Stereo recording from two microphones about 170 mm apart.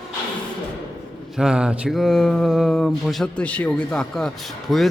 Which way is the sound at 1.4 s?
5° right (ahead or behind).